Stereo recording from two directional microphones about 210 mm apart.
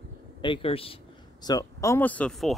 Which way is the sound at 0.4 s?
25° left (ahead or behind).